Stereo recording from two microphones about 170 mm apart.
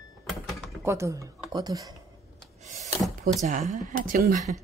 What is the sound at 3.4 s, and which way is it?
Speech, 45° right (ahead or behind).